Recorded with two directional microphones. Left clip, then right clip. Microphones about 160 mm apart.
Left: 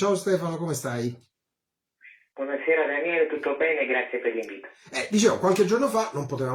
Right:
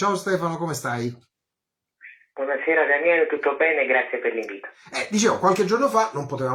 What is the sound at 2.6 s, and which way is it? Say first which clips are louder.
Speech: right 5 dB; 35° right (ahead or behind).